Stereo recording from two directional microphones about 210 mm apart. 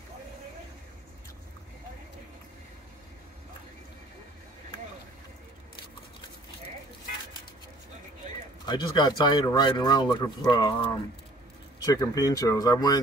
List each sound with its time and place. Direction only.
8.6 s speech: 20° left (ahead or behind)